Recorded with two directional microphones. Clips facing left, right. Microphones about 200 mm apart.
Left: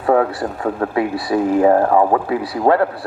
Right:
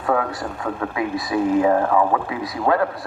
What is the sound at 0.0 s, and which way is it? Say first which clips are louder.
Speech: left 6 dB; 35° left (ahead or behind).